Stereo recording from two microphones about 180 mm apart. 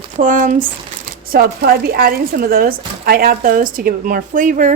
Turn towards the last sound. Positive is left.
turn(degrees=-45)  # may be behind; listen again after turning